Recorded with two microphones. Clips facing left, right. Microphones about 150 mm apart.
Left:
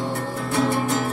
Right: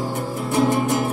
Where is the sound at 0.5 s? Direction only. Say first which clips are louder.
Right 3 dB; 20° right (ahead or behind).